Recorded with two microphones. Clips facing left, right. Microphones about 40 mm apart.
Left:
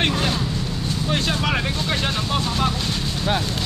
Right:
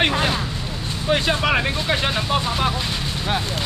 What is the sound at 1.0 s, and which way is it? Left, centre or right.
Speech, centre.